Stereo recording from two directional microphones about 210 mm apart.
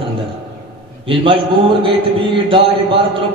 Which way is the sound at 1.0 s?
25° right (ahead or behind).